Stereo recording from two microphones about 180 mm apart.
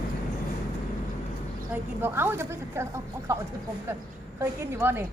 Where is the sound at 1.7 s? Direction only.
10° right (ahead or behind).